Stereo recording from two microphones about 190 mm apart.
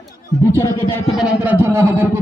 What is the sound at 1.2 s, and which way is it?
Speech, 10° right (ahead or behind).